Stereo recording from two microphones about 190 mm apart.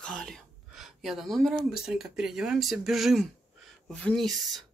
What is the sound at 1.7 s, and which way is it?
Speech, centre (ahead or behind).